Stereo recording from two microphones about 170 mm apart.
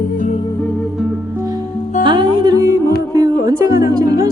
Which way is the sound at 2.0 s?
25° right (ahead or behind).